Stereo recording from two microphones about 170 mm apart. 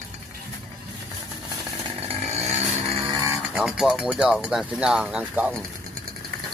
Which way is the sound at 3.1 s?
20° right (ahead or behind).